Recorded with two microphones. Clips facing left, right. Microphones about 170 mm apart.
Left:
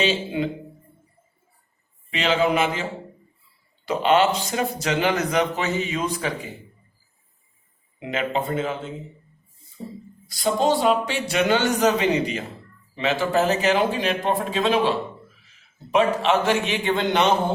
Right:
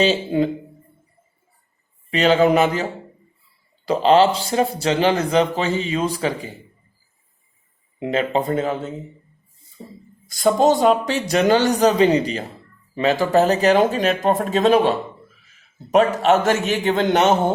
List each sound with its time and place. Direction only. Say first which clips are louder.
0.0 s speech: right 5 dB; 40° right (ahead or behind)
2.0 s speech: right 6 dB; 40° right (ahead or behind)
3.8 s speech: right 4 dB; 30° right (ahead or behind)
7.9 s speech: right 5 dB; 40° right (ahead or behind)
10.2 s speech: right 5 dB; 50° right (ahead or behind)